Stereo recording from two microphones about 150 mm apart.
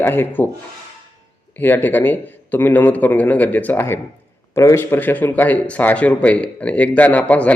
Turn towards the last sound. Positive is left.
turn(degrees=10)  # may be behind; listen again after turning